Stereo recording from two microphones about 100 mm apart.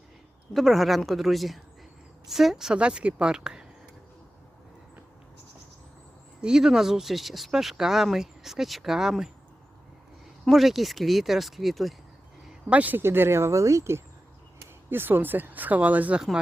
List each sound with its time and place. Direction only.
0.5 s a woman's voice: centre (ahead or behind)
6.4 s speech: 5° right (ahead or behind)
10.4 s speech: centre (ahead or behind)
12.7 s a woman's voice: 15° right (ahead or behind)